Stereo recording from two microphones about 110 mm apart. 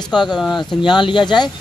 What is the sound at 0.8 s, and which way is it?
Speech, 45° left (ahead or behind).